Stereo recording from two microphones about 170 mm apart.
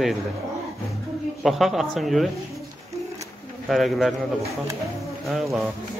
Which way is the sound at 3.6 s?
Centre (ahead or behind).